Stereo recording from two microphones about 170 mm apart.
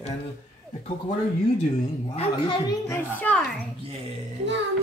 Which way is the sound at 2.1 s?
30° left (ahead or behind).